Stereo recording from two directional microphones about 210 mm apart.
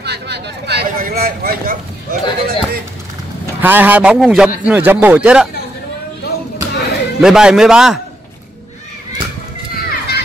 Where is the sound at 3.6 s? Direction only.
10° right (ahead or behind).